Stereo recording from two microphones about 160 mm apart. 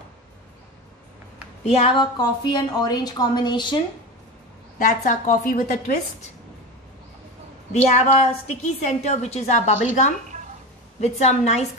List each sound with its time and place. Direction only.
1.6 s speech: 40° left (ahead or behind)
2.1 s a woman's voice: 25° left (ahead or behind)
4.7 s a woman's voice: 55° left (ahead or behind)
7.7 s a woman's voice: 45° left (ahead or behind)
11.0 s a woman's voice: 45° left (ahead or behind)